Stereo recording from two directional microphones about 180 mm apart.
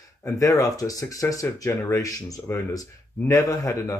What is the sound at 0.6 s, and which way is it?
Speech, 20° left (ahead or behind).